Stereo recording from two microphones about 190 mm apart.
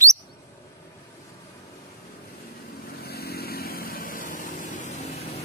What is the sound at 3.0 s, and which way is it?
Vehicle, 55° left (ahead or behind).